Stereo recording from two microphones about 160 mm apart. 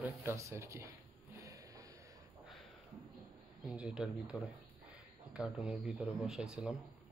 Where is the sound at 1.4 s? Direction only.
20° right (ahead or behind).